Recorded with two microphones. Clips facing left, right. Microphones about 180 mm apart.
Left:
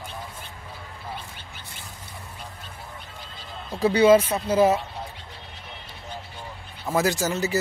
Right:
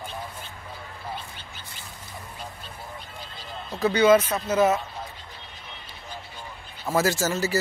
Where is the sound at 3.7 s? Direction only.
30° left (ahead or behind).